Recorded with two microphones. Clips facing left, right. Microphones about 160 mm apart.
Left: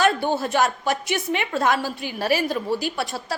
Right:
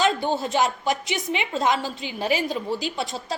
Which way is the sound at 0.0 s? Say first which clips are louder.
Left 2 dB; 20° right (ahead or behind).